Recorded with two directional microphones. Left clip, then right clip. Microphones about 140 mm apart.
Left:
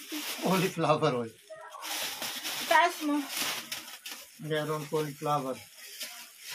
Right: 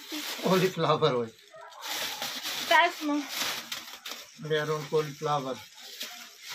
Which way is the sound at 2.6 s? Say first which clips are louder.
Right 1 dB; 35° left (ahead or behind).